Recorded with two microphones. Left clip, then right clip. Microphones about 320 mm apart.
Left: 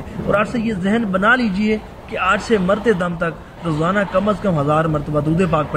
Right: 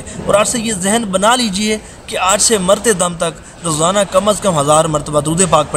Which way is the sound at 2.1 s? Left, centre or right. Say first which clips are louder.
Right 4 dB; centre.